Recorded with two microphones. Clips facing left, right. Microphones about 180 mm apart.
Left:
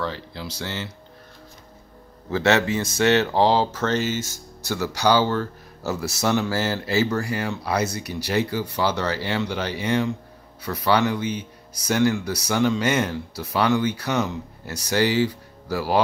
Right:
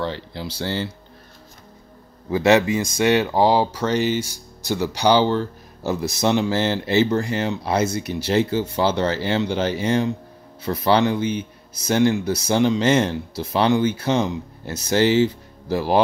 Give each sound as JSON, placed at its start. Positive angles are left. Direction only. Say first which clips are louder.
{"t": 0.0, "sound": "speech", "louder": "right 3 dB", "side_deg": -30}
{"t": 2.3, "sound": "speech", "louder": "right 4 dB", "side_deg": -15}